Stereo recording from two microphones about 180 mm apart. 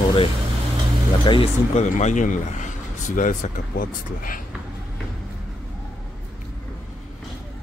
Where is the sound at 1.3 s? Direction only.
30° left (ahead or behind).